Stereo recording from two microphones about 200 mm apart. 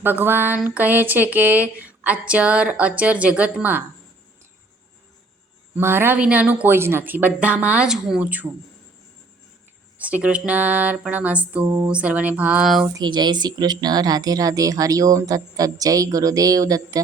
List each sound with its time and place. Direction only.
0.0 s a woman's voice: 10° right (ahead or behind)
5.7 s a woman's voice: 10° right (ahead or behind)
10.0 s a woman's voice: 5° right (ahead or behind)
12.9 s a woman's voice: 20° right (ahead or behind)